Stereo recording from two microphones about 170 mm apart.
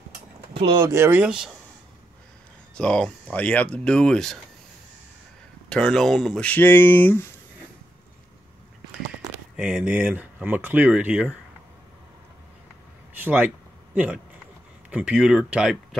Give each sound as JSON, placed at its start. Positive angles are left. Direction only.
{"t": 0.6, "sound": "speech", "side_deg": -30}
{"t": 0.8, "sound": "speech", "side_deg": -15}
{"t": 2.7, "sound": "speech", "side_deg": 5}
{"t": 5.7, "sound": "speech", "side_deg": 5}
{"t": 9.6, "sound": "speech", "side_deg": -5}
{"t": 13.2, "sound": "speech", "side_deg": -10}